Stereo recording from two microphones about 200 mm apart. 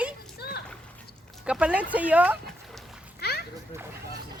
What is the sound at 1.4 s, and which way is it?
Speech, 5° right (ahead or behind).